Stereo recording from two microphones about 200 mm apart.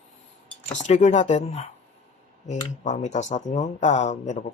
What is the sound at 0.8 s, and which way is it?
Speech, 35° left (ahead or behind).